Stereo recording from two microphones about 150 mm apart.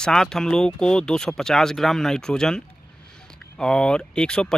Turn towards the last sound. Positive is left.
turn(degrees=5)  # may be behind; listen again after turning